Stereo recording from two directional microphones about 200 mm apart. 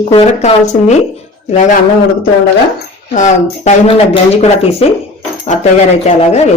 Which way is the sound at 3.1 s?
35° left (ahead or behind).